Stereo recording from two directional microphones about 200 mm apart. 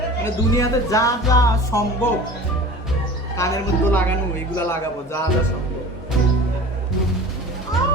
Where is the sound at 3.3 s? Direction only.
15° left (ahead or behind).